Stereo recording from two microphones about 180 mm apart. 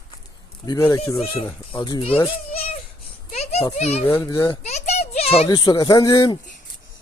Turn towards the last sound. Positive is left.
turn(degrees=20)  # may be behind; listen again after turning